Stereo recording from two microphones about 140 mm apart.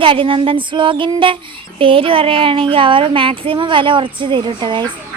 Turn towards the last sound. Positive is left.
turn(degrees=-35)  # may be behind; listen again after turning